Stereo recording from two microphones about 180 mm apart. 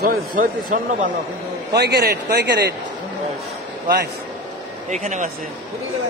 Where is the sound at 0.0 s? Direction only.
55° right (ahead or behind).